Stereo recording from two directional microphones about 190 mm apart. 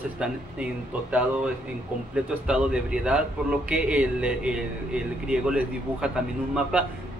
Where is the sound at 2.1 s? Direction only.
5° right (ahead or behind).